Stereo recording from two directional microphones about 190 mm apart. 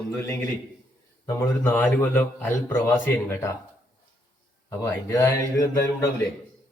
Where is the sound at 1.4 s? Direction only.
15° left (ahead or behind).